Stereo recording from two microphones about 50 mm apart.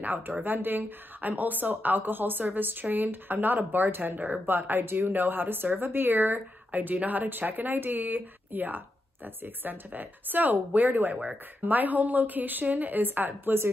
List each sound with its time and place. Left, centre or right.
0.0 s a woman's voice: right